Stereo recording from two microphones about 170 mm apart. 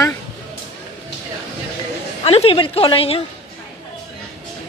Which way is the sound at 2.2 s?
35° left (ahead or behind).